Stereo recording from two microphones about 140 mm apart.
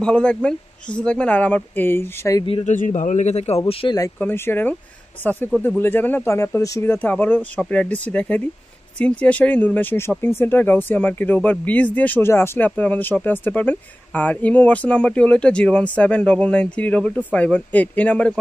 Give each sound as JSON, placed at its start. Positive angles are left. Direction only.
{"t": 0.0, "sound": "speech", "side_deg": 5}
{"t": 2.6, "sound": "a man's voice", "side_deg": 65}
{"t": 4.2, "sound": "speech", "side_deg": 15}